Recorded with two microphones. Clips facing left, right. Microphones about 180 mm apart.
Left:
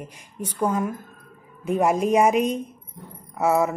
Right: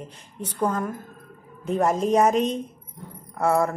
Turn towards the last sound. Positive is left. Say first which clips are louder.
# left 1 dB
turn(degrees=5)  # may be behind; listen again after turning